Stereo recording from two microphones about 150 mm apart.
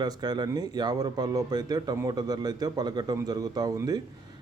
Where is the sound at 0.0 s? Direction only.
30° right (ahead or behind).